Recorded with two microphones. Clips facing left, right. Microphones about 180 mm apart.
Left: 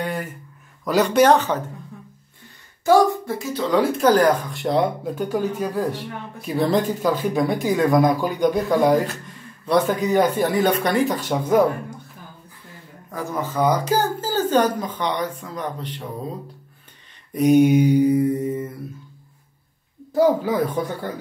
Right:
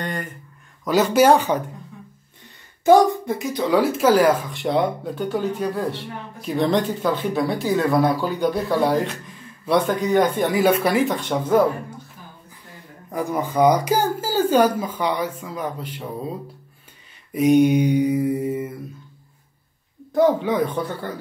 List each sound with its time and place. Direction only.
0.0 s a sound: 5° left (ahead or behind)
0.8 s speech: centre (ahead or behind)
2.8 s speech: 20° right (ahead or behind); by 9.0 s 15° left (ahead or behind)
9.0 s speech: centre (ahead or behind)
13.1 s speech: 15° right (ahead or behind)
17.3 s a sound: centre (ahead or behind)
17.6 s speech: 5° left (ahead or behind)
20.1 s speech: 5° left (ahead or behind)